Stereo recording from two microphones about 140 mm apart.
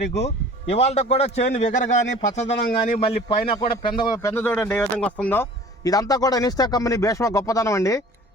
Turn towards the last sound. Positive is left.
turn(degrees=20)  # may be behind; listen again after turning